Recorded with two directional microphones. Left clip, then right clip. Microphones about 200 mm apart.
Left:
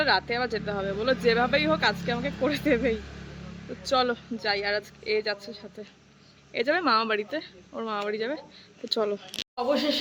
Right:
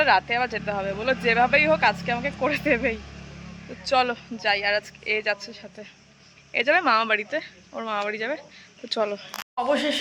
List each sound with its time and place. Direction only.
0.0 s speech: centre (ahead or behind)